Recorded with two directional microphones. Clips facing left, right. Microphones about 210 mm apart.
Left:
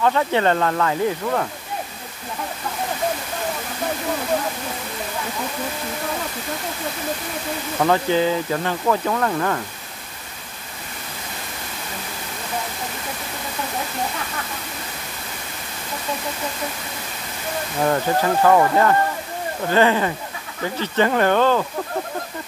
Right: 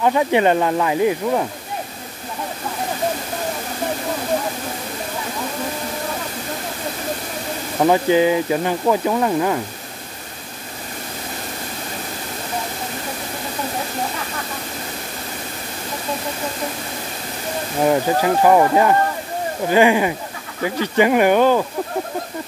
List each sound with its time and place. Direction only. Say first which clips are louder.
0.0 s speech: right 3 dB; 15° right (ahead or behind)
7.8 s speech: right 4 dB; 15° right (ahead or behind)
17.8 s speech: right 3 dB; 15° right (ahead or behind)